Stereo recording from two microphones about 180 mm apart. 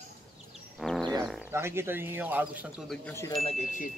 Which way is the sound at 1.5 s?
15° right (ahead or behind).